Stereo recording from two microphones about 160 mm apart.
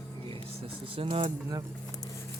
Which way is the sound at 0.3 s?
35° right (ahead or behind).